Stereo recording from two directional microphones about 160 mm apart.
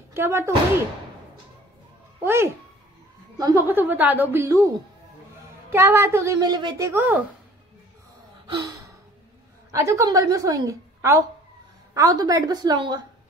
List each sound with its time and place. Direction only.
0.1 s speech: 15° right (ahead or behind)
2.2 s a woman's voice: 15° right (ahead or behind)
5.7 s a woman's voice: 15° right (ahead or behind)
6.9 s a woman's voice: 10° right (ahead or behind)
8.5 s gasp: 25° right (ahead or behind)
9.7 s a woman's voice: 20° right (ahead or behind)